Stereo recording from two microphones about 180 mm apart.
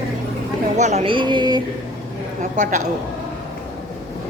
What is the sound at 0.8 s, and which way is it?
Speech, 40° right (ahead or behind).